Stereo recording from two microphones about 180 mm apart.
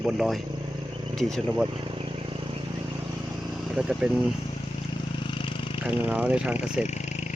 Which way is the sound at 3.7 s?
5° right (ahead or behind).